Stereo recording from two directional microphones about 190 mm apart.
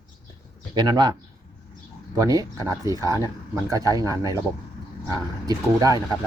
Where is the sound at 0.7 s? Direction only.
20° right (ahead or behind).